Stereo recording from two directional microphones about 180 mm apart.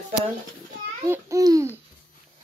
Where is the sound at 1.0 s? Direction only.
15° right (ahead or behind).